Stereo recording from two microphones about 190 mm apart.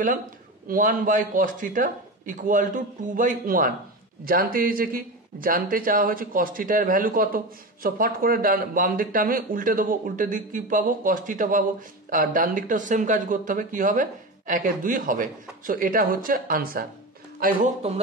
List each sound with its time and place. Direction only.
0.7 s a man's voice: 45° right (ahead or behind)